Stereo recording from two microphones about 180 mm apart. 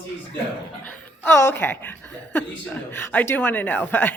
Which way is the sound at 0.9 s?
10° left (ahead or behind).